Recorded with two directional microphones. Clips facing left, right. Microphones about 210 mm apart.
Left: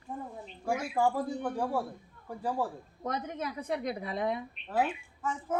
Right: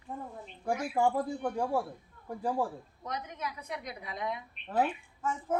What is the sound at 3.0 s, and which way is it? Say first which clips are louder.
Speech: left 4 dB; 50° left (ahead or behind).